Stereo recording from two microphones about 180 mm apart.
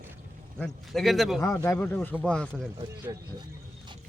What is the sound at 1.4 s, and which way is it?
Speech, 15° left (ahead or behind).